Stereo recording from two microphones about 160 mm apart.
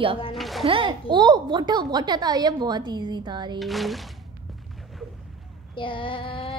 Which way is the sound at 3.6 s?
Centre (ahead or behind).